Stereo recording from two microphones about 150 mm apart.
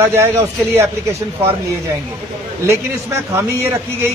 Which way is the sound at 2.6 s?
15° right (ahead or behind).